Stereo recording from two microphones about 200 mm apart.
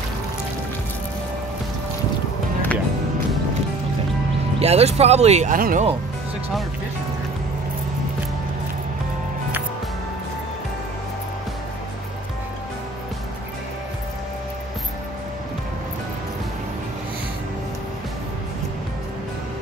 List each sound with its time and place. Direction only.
4.6 s speech: 30° right (ahead or behind)